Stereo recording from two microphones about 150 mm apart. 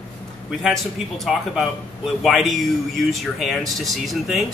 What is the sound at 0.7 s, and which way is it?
A man's voice, centre (ahead or behind).